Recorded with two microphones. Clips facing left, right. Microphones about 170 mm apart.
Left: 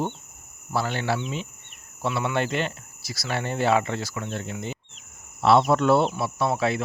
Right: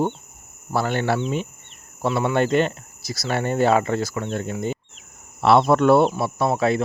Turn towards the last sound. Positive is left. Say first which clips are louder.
# right 4 dB
turn(degrees=-45)  # may be behind; listen again after turning